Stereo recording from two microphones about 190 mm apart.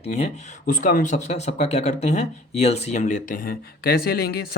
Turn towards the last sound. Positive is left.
turn(degrees=55)  # may be behind; listen again after turning